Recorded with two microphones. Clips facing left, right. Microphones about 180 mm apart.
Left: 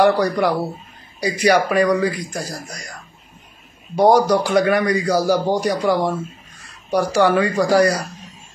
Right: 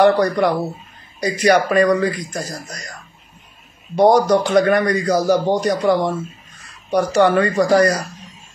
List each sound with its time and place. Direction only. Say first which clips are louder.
0.0 s a man's voice: right 2 dB; 10° left (ahead or behind)
3.9 s a man's voice: right 1 dB; 10° left (ahead or behind)
7.1 s a man's voice: right 2 dB; 10° left (ahead or behind)